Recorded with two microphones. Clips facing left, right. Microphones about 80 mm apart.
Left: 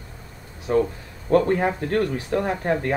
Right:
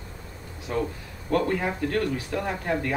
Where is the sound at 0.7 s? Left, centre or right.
Left.